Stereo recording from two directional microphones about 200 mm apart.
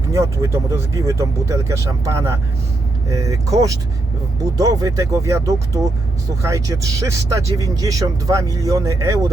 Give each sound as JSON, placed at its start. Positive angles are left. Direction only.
{"t": 0.1, "sound": "speech", "side_deg": -15}